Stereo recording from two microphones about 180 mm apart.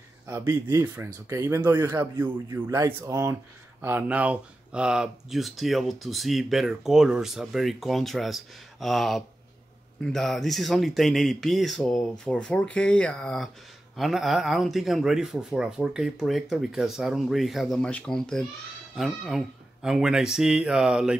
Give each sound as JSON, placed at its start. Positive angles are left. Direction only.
{"t": 0.3, "sound": "speech", "side_deg": -15}